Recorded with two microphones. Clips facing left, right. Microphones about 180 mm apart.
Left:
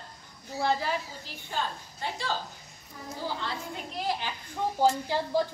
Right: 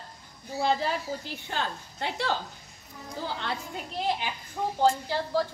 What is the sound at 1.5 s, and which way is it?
Speech, 70° right (ahead or behind).